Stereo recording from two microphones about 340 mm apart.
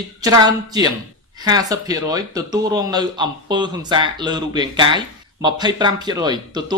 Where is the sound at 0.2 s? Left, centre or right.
Centre.